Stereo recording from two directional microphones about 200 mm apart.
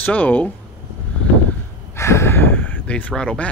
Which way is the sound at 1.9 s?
15° left (ahead or behind).